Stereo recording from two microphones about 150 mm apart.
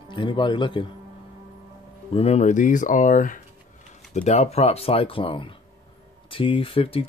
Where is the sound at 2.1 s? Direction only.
45° left (ahead or behind).